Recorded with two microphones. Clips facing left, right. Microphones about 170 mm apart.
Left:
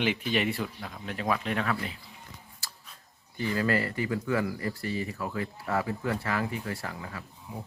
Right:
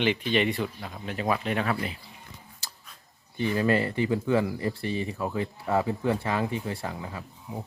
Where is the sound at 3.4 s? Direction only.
20° right (ahead or behind).